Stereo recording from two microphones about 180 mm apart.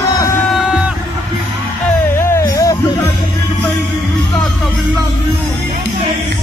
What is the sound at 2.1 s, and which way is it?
Music, 15° left (ahead or behind).